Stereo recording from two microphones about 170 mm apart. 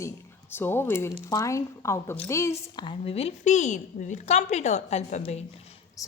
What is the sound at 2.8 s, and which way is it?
A woman's voice, 35° left (ahead or behind).